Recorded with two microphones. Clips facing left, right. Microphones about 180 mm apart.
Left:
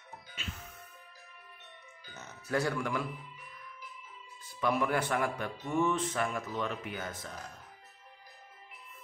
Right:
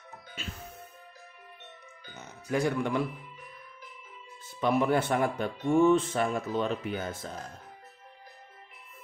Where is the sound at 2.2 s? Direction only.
15° right (ahead or behind).